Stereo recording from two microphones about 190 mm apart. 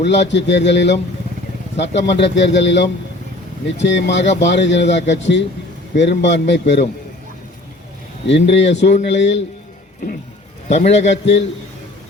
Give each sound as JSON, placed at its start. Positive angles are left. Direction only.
{"t": 0.0, "sound": "a man's voice", "side_deg": 65}
{"t": 8.3, "sound": "a man's voice", "side_deg": 70}
{"t": 10.7, "sound": "a man's voice", "side_deg": 35}
{"t": 11.1, "sound": "a man's voice", "side_deg": 70}